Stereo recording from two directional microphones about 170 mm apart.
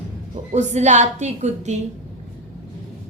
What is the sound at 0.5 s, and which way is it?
A woman's voice, 40° right (ahead or behind).